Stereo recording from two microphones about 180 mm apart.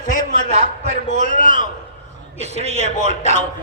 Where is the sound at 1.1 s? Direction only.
45° left (ahead or behind).